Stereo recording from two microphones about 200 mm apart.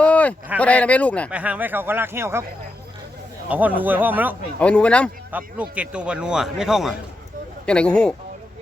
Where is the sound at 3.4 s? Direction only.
10° right (ahead or behind).